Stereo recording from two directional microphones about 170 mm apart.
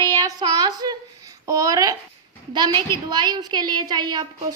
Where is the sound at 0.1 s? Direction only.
20° right (ahead or behind).